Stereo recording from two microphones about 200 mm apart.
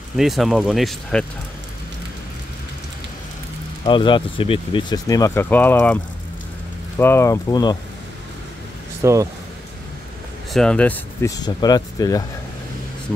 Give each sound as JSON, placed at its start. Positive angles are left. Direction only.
{"t": 0.2, "sound": "speech", "side_deg": 0}
{"t": 3.8, "sound": "speech", "side_deg": 25}
{"t": 7.0, "sound": "speech", "side_deg": 10}
{"t": 9.0, "sound": "speech", "side_deg": -15}
{"t": 10.5, "sound": "speech", "side_deg": 5}